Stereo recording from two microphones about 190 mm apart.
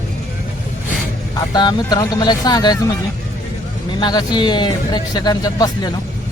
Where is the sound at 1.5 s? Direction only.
20° left (ahead or behind).